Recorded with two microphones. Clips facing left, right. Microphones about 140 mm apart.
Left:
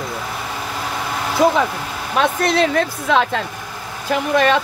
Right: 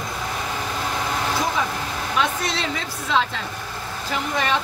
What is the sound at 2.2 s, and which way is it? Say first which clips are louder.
A woman's voice: left 9 dB; 55° left (ahead or behind).